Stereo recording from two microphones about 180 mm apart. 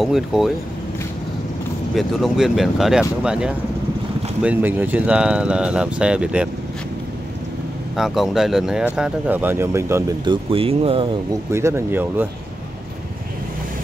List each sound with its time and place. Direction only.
0.0 s speech: centre (ahead or behind)
2.0 s speech: centre (ahead or behind)
7.9 s speech: centre (ahead or behind)
10.2 s speech: 30° right (ahead or behind)
11.5 s speech: 15° right (ahead or behind)